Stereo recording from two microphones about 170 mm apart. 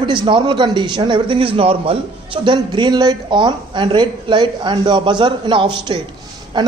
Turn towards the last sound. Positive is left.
turn(degrees=-25)  # may be behind; listen again after turning